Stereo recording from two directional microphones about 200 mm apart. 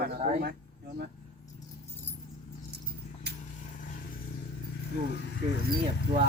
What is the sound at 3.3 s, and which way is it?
Vehicle, 55° right (ahead or behind).